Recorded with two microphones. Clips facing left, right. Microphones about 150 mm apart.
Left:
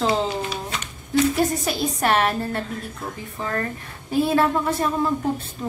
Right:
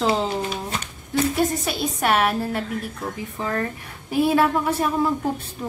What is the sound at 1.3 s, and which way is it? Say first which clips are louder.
A woman's voice: even; 5° right (ahead or behind).